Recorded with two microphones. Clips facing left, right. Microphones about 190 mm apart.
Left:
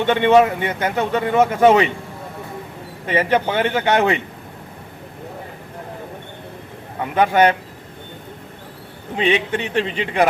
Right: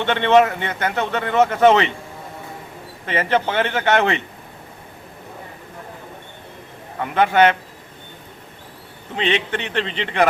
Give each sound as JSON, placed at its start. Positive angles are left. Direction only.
{"t": 0.0, "sound": "a man's voice", "side_deg": 10}
{"t": 3.1, "sound": "a man's voice", "side_deg": 10}
{"t": 7.1, "sound": "a man's voice", "side_deg": 10}
{"t": 9.1, "sound": "a man's voice", "side_deg": 10}